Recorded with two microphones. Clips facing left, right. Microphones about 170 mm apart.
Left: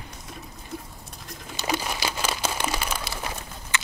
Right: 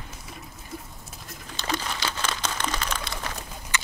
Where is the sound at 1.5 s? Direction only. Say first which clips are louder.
Left 2 dB; 10° left (ahead or behind).